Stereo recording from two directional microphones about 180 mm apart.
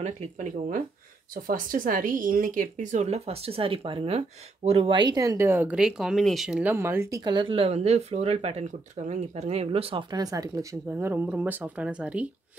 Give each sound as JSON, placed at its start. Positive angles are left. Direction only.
{"t": 0.0, "sound": "speech", "side_deg": -45}